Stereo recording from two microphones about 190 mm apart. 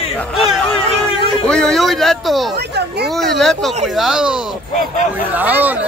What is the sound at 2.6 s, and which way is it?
Speech, 60° right (ahead or behind).